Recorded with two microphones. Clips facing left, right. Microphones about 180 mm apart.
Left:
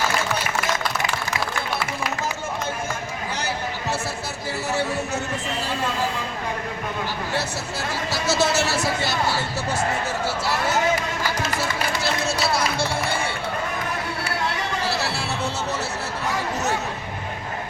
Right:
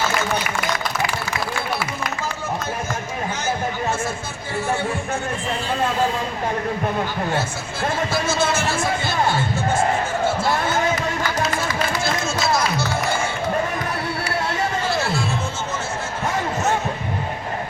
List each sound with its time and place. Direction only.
8.1 s music: 40° left (ahead or behind)
12.2 s run: 30° left (ahead or behind)
14.8 s music: 35° left (ahead or behind)